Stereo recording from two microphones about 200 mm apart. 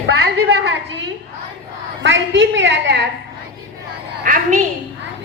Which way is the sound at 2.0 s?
65° right (ahead or behind).